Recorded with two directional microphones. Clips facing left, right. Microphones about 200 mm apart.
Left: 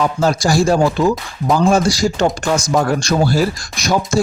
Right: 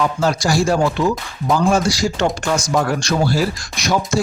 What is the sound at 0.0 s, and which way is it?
Speech, 40° left (ahead or behind).